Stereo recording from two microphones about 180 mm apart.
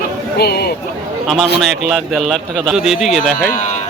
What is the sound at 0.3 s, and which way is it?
Speech, 60° left (ahead or behind).